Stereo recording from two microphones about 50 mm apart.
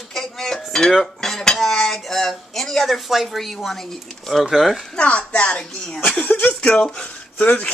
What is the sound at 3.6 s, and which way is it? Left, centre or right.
Speech, centre.